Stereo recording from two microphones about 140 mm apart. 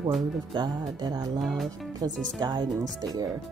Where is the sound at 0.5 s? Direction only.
30° right (ahead or behind).